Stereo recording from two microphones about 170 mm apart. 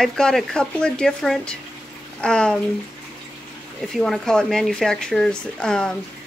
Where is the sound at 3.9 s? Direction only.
Centre (ahead or behind).